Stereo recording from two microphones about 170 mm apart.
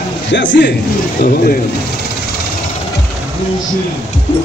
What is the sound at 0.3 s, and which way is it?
Speech, 90° left.